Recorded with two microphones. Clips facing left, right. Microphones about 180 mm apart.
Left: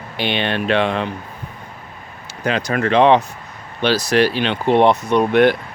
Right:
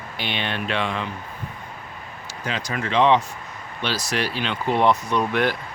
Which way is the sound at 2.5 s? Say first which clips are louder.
Left 9 dB; 65° left (ahead or behind).